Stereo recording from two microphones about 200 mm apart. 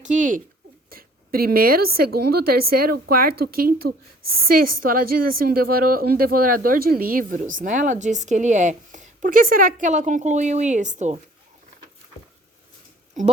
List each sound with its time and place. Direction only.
0.0 s speech: 40° right (ahead or behind)
0.9 s a sound: 50° right (ahead or behind)
2.0 s a woman's voice: 50° right (ahead or behind)